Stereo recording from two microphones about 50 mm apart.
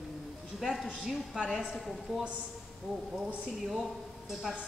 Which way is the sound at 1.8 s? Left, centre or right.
Centre.